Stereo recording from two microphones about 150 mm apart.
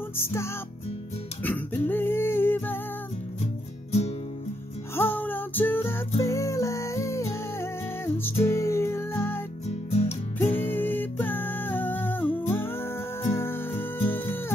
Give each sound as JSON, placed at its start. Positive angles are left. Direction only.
{"t": 0.2, "sound": "music", "side_deg": 20}
{"t": 1.4, "sound": "a sound", "side_deg": 10}
{"t": 4.9, "sound": "music", "side_deg": 15}
{"t": 9.8, "sound": "music", "side_deg": 45}
{"t": 10.4, "sound": "music", "side_deg": 15}